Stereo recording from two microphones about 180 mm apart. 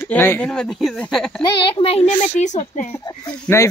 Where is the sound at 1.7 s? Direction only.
35° left (ahead or behind).